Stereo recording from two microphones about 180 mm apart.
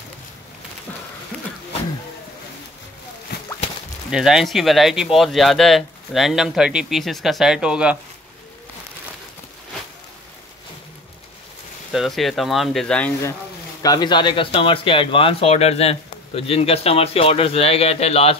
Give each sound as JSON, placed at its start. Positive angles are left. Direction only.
{"t": 3.3, "sound": "whip", "side_deg": 65}
{"t": 4.1, "sound": "speech", "side_deg": 0}
{"t": 11.9, "sound": "speech", "side_deg": 0}
{"t": 13.8, "sound": "speech", "side_deg": 25}